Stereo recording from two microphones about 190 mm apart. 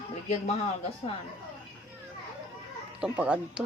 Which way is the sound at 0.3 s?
35° left (ahead or behind).